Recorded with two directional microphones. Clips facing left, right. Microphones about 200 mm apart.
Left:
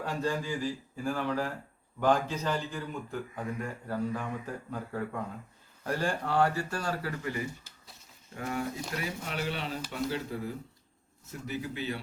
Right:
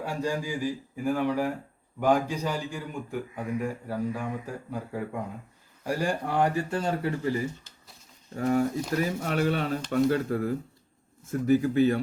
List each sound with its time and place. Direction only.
0.0 s a man's voice: 10° right (ahead or behind)
7.2 s speech: 35° right (ahead or behind)